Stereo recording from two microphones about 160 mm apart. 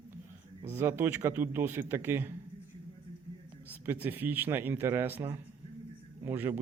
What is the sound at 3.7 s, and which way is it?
A man's voice, 10° right (ahead or behind).